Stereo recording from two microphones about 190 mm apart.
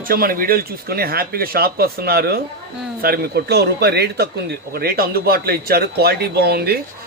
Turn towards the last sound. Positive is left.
turn(degrees=-55)  # may be behind; listen again after turning